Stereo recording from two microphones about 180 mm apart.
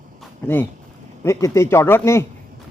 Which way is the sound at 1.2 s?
15° left (ahead or behind).